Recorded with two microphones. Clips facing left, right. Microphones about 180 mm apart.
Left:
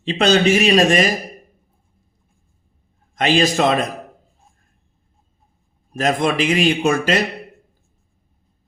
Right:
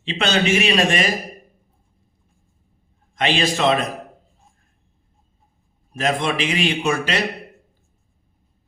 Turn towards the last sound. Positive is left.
turn(degrees=40)  # may be behind; listen again after turning